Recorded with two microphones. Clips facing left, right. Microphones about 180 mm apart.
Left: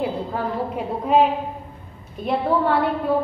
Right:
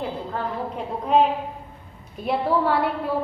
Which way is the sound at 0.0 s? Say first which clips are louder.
Left 4 dB; 10° left (ahead or behind).